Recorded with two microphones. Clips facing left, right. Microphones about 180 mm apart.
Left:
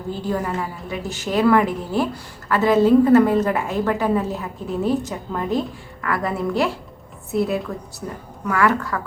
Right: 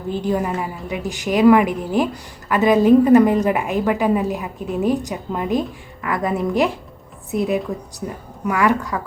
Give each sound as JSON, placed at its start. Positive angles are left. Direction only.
{"t": 0.1, "sound": "a woman's voice", "side_deg": -15}